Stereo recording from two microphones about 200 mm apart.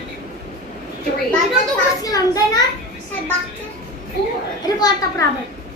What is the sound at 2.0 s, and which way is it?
Speech, 20° left (ahead or behind).